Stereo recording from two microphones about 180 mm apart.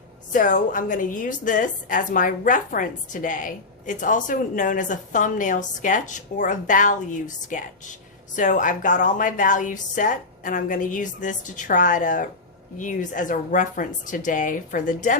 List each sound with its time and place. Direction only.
0.3 s a woman's voice: 45° left (ahead or behind)